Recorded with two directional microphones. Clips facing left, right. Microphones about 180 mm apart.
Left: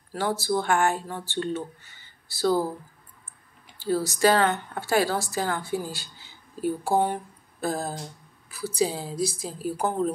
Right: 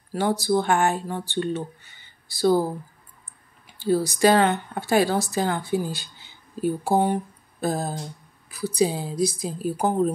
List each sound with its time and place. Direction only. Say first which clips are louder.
0.1 s speech: right 4 dB; 15° right (ahead or behind)
3.6 s speech: right 4 dB; 15° right (ahead or behind)